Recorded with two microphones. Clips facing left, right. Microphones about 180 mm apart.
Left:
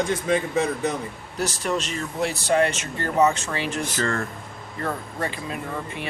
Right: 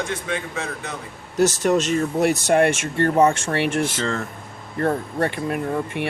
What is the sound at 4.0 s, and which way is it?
Speech, centre (ahead or behind).